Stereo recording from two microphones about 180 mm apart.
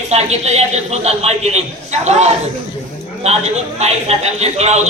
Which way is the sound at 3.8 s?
35° right (ahead or behind).